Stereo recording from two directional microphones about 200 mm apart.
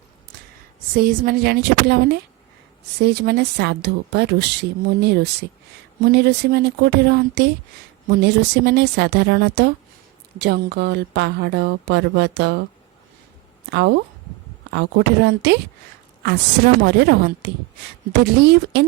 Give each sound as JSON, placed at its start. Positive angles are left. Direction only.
{"t": 0.9, "sound": "a woman's voice", "side_deg": -45}
{"t": 13.7, "sound": "a woman's voice", "side_deg": -55}